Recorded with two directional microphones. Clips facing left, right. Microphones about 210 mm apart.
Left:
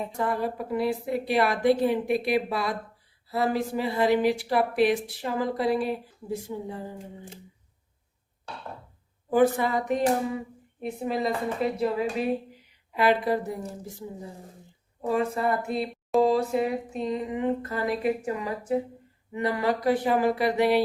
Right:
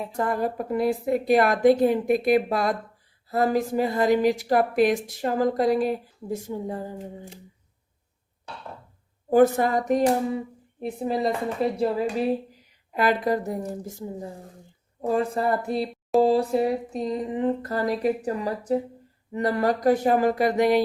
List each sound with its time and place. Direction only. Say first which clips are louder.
0.2 s speech: right 3 dB; 45° right (ahead or behind)
9.3 s speech: right 3 dB; 45° right (ahead or behind)
10.8 s a woman's voice: right 2 dB; 30° right (ahead or behind)
12.9 s speech: right 1 dB; 45° right (ahead or behind)
15.1 s speech: right 2 dB; 35° right (ahead or behind)